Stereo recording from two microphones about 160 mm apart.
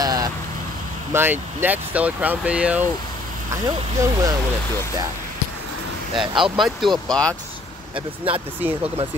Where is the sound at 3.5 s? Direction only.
20° right (ahead or behind).